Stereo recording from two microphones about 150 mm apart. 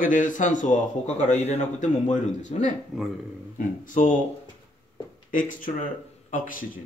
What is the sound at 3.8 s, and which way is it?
Speech, 60° left (ahead or behind).